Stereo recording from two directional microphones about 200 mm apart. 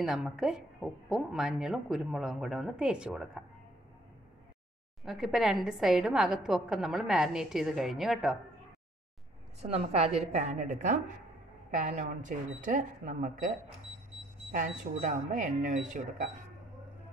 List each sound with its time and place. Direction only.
0.0 s a woman's voice: centre (ahead or behind)
5.0 s a woman's voice: centre (ahead or behind)
9.6 s speech: 30° right (ahead or behind)